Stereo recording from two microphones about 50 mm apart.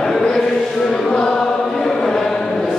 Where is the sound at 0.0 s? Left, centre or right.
Centre.